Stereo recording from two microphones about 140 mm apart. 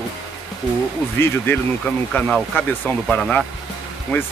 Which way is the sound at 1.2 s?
15° left (ahead or behind).